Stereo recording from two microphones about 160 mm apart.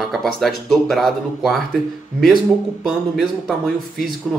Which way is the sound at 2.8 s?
Centre (ahead or behind).